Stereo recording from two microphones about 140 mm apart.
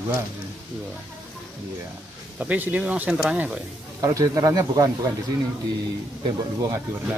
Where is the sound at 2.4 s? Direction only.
10° right (ahead or behind).